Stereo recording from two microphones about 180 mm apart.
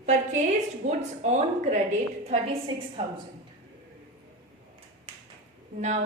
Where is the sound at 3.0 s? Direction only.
35° right (ahead or behind).